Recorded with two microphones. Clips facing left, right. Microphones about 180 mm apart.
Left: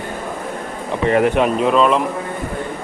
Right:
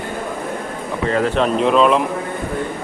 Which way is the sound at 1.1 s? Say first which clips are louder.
Left 2 dB; 15° left (ahead or behind).